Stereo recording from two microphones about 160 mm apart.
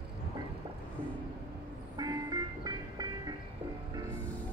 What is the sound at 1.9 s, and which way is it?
Music, 25° right (ahead or behind).